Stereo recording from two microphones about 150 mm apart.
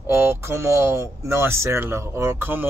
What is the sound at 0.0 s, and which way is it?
Speech, 15° right (ahead or behind).